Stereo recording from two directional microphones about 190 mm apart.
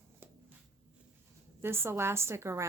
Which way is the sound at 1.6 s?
10° right (ahead or behind).